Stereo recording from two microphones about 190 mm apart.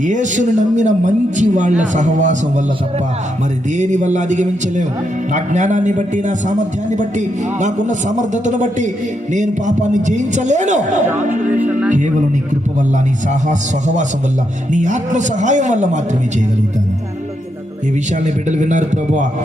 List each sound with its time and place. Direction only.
0.0 s a man's voice: 40° right (ahead or behind)
3.8 s a man's voice: 40° right (ahead or behind)
11.5 s speech: 10° right (ahead or behind)
11.9 s a man's voice: 40° right (ahead or behind)
13.5 s a man's voice: 40° right (ahead or behind)
18.4 s a man's voice: 40° right (ahead or behind)